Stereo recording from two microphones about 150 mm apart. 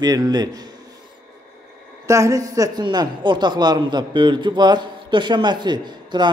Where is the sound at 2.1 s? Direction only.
20° right (ahead or behind).